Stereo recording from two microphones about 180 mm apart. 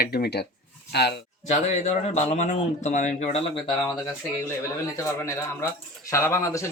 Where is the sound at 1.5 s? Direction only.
40° left (ahead or behind).